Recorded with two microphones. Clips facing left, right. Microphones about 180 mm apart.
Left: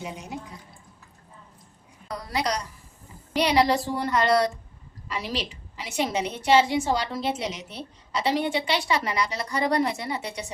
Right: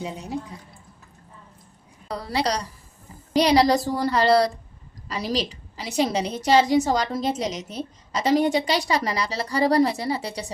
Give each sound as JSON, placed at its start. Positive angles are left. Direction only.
{"t": 0.0, "sound": "a woman's voice", "side_deg": -35}
{"t": 2.0, "sound": "a woman's voice", "side_deg": -30}